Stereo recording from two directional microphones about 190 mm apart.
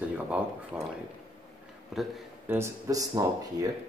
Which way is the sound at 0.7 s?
5° right (ahead or behind).